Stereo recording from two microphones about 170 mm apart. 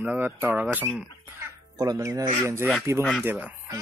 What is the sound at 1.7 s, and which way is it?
Speech, 20° right (ahead or behind).